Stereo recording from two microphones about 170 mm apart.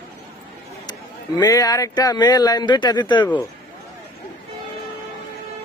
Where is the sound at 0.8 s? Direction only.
25° left (ahead or behind).